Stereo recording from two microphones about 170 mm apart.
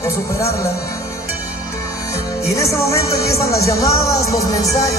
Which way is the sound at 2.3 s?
20° left (ahead or behind).